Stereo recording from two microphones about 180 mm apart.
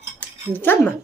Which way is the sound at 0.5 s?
10° left (ahead or behind).